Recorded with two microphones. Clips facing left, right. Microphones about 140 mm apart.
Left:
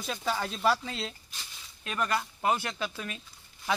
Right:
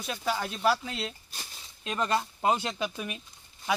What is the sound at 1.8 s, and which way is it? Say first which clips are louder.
Speech: right 2 dB; 25° right (ahead or behind).